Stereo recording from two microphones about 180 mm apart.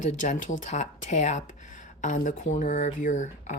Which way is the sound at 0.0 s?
45° left (ahead or behind).